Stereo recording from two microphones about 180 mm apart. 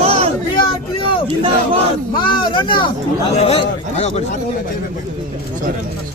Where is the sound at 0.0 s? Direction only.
35° right (ahead or behind).